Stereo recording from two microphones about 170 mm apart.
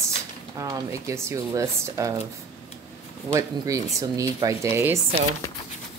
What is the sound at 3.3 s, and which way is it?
Speech, 20° right (ahead or behind).